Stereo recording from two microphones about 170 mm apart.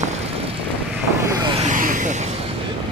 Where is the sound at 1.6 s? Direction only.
50° right (ahead or behind).